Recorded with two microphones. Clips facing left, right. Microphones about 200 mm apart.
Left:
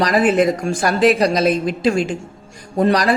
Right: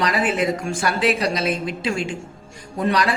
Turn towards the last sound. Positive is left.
turn(degrees=40)  # may be behind; listen again after turning